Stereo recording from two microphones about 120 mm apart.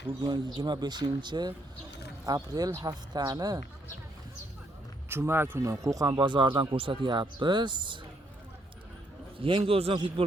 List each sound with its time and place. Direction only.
0.2 s speech: 35° right (ahead or behind)
5.0 s a man's voice: 20° right (ahead or behind); by 7.9 s 40° right (ahead or behind)
9.4 s a man's voice: 50° right (ahead or behind)